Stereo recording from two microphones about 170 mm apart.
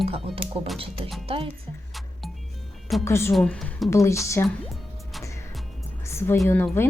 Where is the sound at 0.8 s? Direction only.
35° right (ahead or behind).